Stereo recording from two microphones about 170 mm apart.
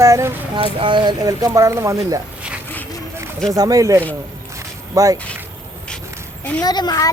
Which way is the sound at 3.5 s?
20° right (ahead or behind).